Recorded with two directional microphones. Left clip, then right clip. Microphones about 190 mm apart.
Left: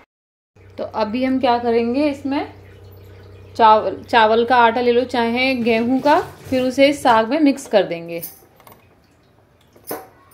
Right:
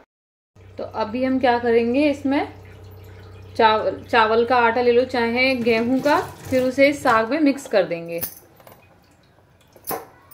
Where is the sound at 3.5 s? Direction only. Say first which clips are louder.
Left 5 dB; 10° left (ahead or behind).